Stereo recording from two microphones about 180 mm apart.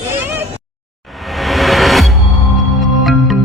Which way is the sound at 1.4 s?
Centre (ahead or behind).